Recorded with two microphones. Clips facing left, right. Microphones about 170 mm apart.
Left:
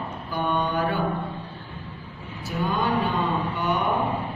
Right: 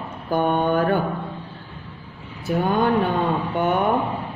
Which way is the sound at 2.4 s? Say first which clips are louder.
Right 6 dB; 55° right (ahead or behind).